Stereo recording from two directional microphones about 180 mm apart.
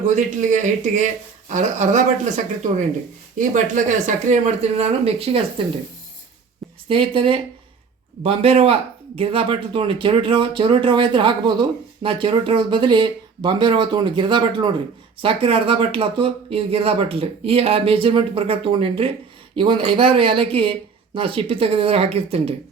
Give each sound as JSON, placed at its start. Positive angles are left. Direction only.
{"t": 0.0, "sound": "speech", "side_deg": -45}
{"t": 6.8, "sound": "speech", "side_deg": -30}